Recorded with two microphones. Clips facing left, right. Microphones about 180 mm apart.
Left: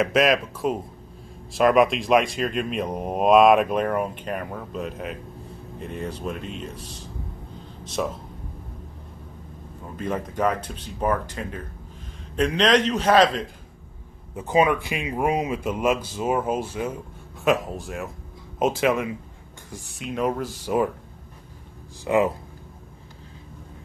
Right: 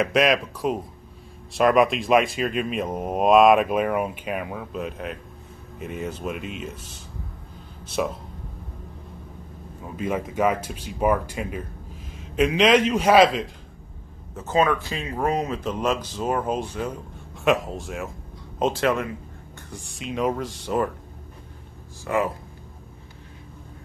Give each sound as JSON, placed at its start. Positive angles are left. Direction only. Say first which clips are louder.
{"t": 0.0, "sound": "speech", "louder": "even", "side_deg": 0}
{"t": 7.8, "sound": "speech", "louder": "right 1 dB", "side_deg": 0}
{"t": 9.8, "sound": "speech", "louder": "right 2 dB", "side_deg": -10}
{"t": 14.3, "sound": "speech", "louder": "left 1 dB", "side_deg": 15}
{"t": 22.0, "sound": "speech", "louder": "left 4 dB", "side_deg": 20}